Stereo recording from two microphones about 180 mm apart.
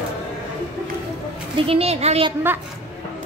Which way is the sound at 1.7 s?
35° right (ahead or behind).